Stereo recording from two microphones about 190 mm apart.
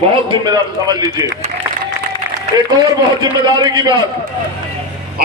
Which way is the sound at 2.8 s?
20° right (ahead or behind).